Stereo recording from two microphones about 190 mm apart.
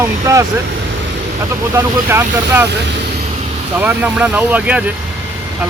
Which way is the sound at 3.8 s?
10° right (ahead or behind).